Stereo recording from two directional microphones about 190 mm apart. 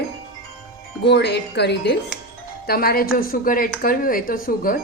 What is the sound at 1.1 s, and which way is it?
Speech, 60° left (ahead or behind).